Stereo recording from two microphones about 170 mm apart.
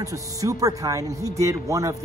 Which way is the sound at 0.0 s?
20° right (ahead or behind).